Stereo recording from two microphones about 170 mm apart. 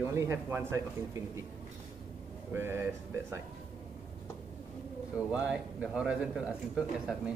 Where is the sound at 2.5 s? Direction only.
15° right (ahead or behind).